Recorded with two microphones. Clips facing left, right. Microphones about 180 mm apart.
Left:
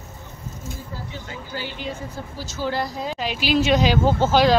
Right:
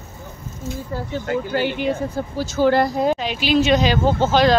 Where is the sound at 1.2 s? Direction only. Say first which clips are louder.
Right 14 dB; 65° right (ahead or behind).